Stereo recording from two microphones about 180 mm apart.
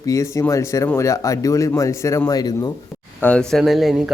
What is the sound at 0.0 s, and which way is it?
Speech, 15° left (ahead or behind).